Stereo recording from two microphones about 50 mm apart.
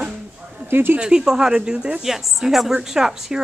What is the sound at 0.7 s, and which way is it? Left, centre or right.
Speech, right.